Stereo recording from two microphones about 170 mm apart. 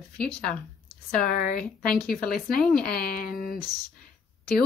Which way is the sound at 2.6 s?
5° left (ahead or behind).